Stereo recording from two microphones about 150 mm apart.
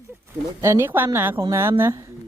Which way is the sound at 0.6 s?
15° right (ahead or behind).